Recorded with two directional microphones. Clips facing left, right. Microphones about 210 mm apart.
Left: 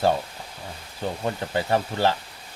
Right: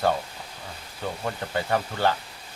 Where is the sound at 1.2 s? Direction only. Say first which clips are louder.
Left 3 dB; 25° left (ahead or behind).